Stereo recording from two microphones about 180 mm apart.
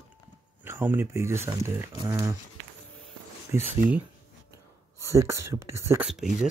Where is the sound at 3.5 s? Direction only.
15° right (ahead or behind).